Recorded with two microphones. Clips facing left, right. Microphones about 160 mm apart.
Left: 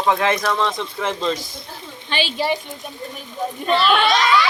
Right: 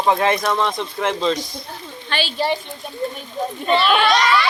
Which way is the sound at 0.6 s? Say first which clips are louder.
Right 1 dB; centre (ahead or behind).